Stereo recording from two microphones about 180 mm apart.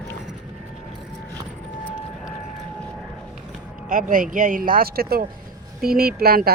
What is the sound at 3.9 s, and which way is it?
Speech, 50° right (ahead or behind).